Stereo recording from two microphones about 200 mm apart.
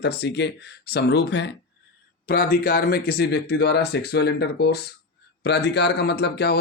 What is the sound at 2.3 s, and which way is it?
Speech, 45° left (ahead or behind).